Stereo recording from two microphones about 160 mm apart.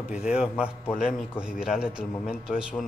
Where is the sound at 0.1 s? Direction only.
5° right (ahead or behind).